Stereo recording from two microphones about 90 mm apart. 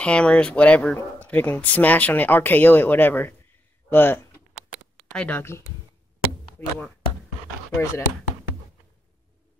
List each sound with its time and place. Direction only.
0.0 s speech: 10° left (ahead or behind)
6.6 s speech: 20° left (ahead or behind)
7.7 s speech: 30° left (ahead or behind)